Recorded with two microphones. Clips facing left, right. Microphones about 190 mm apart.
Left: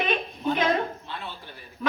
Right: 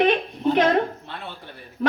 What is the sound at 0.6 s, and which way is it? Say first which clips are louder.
Speech: right 6 dB; 60° right (ahead or behind).